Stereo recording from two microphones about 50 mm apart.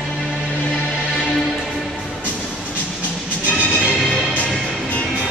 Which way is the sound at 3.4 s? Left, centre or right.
Left.